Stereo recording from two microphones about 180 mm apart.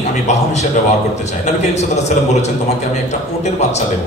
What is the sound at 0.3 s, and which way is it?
A man's voice, 40° left (ahead or behind).